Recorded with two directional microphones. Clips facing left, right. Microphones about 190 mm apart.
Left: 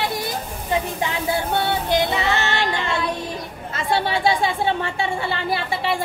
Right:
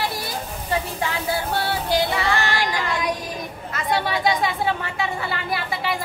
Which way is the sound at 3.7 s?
25° left (ahead or behind).